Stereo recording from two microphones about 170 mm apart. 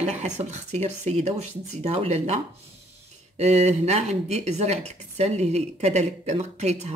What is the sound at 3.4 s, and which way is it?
Speech, 40° right (ahead or behind).